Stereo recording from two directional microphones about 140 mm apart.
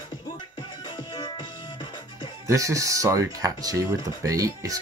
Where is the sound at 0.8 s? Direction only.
35° left (ahead or behind).